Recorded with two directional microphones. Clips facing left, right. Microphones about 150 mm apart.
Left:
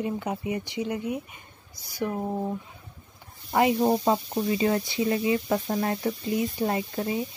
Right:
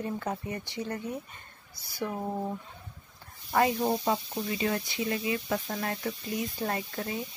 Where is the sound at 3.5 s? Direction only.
20° left (ahead or behind).